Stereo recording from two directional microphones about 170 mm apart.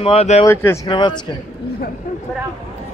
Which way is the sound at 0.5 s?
15° left (ahead or behind).